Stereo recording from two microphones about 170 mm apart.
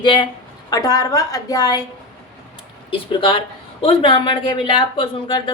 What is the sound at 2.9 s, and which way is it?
A woman's voice, 30° left (ahead or behind).